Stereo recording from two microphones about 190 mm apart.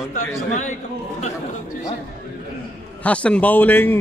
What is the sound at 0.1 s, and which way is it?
Speech, 40° left (ahead or behind).